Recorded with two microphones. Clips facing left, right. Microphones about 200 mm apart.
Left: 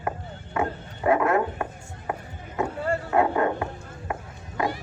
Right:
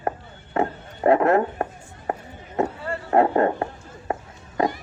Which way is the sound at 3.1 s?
35° right (ahead or behind).